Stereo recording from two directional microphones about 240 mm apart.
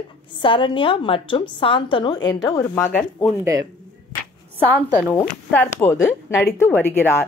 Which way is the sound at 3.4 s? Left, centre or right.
Centre.